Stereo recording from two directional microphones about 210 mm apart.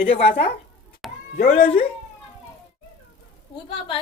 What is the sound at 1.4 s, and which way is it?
Speech, 45° left (ahead or behind).